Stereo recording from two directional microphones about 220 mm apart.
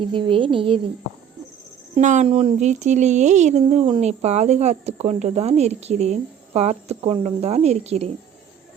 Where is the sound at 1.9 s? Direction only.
35° right (ahead or behind).